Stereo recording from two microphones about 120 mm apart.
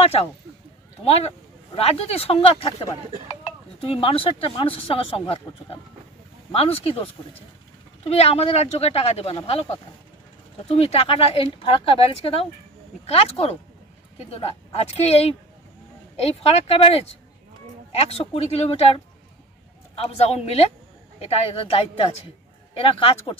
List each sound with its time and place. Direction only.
1.0 s speech: 60° left (ahead or behind)
6.5 s speech: 55° left (ahead or behind)
20.0 s speech: 60° left (ahead or behind)